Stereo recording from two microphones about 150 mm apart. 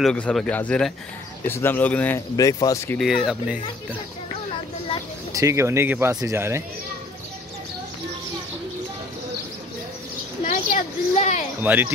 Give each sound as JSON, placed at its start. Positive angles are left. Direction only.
{"t": 0.0, "sound": "speech", "side_deg": 5}
{"t": 2.3, "sound": "speech", "side_deg": 25}
{"t": 3.0, "sound": "speech", "side_deg": -5}
{"t": 5.3, "sound": "speech", "side_deg": -20}
{"t": 10.5, "sound": "a sound", "side_deg": 55}
{"t": 11.6, "sound": "speech", "side_deg": -10}